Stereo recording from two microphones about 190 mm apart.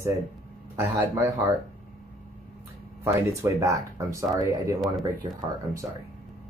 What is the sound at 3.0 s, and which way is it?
Speech, 15° right (ahead or behind).